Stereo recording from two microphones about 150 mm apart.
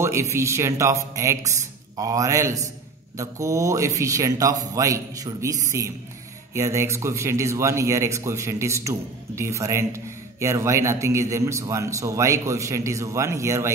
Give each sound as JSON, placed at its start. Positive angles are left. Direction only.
{"t": 0.0, "sound": "speech", "side_deg": -20}